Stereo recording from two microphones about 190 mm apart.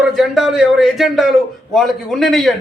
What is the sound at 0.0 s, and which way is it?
A man's voice, centre (ahead or behind).